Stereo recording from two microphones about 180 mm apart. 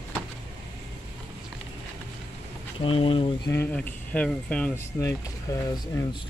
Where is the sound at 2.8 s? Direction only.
30° left (ahead or behind).